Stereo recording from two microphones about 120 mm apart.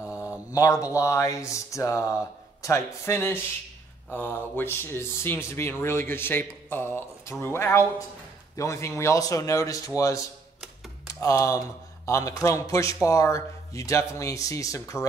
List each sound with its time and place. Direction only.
0.5 s speech: 25° left (ahead or behind)